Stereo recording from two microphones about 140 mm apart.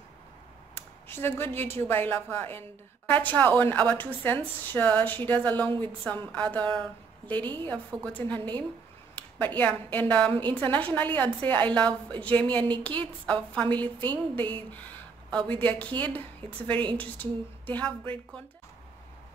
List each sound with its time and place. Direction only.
0.7 s a woman's voice: 15° left (ahead or behind)